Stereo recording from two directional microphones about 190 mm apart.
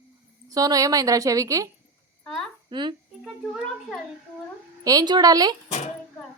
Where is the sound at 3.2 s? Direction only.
5° right (ahead or behind).